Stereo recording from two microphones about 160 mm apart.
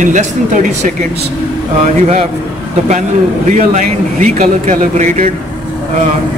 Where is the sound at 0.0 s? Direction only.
50° right (ahead or behind).